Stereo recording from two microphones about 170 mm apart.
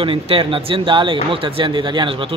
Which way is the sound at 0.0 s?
30° right (ahead or behind).